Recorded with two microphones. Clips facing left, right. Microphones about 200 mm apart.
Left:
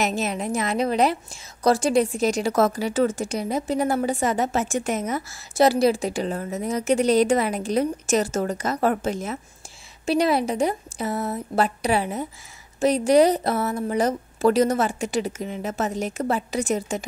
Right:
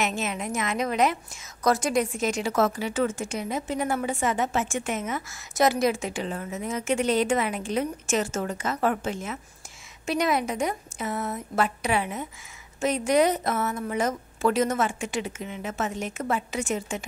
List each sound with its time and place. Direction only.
0.0 s a woman's voice: 35° left (ahead or behind)